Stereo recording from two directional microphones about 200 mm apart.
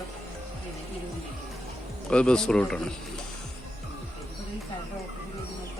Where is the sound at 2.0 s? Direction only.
5° left (ahead or behind).